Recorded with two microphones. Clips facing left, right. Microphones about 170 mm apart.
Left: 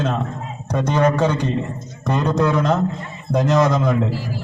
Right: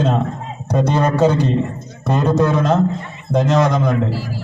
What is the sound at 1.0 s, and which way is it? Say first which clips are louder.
A man's voice: right 1 dB; 10° right (ahead or behind).